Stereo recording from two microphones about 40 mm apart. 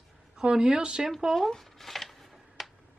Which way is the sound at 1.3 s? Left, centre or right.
Centre.